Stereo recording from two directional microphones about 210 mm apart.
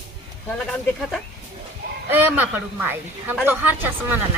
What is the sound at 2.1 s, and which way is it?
Speech, 10° right (ahead or behind).